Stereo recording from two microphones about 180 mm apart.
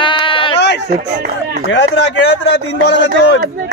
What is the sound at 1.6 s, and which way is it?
Speech, 85° left.